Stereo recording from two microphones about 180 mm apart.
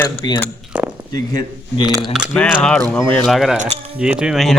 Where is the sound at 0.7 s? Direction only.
5° right (ahead or behind).